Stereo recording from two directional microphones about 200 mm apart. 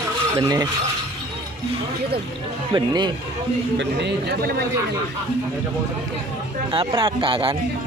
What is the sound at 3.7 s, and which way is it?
Speech, 60° right (ahead or behind).